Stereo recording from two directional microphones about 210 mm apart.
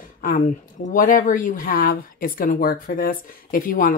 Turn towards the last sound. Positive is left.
turn(degrees=40)  # may be behind; listen again after turning